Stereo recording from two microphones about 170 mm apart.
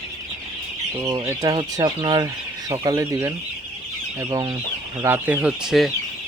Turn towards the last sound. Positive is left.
turn(degrees=-5)  # may be behind; listen again after turning